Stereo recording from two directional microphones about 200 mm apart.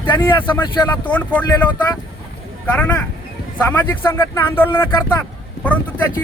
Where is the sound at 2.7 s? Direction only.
5° left (ahead or behind).